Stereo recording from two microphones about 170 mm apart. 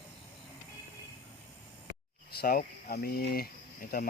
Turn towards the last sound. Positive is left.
turn(degrees=60)  # may be behind; listen again after turning